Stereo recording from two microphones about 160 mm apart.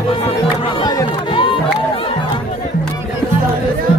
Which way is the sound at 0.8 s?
30° left (ahead or behind).